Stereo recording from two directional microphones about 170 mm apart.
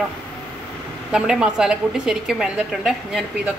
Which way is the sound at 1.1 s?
5° right (ahead or behind).